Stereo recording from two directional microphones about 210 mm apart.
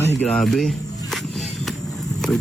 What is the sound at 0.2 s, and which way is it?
Speech, centre (ahead or behind).